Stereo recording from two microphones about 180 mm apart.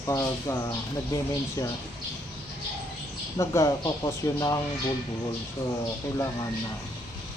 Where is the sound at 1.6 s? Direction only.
20° left (ahead or behind).